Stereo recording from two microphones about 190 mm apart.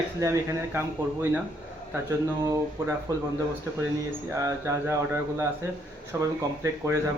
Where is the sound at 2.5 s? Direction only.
15° right (ahead or behind).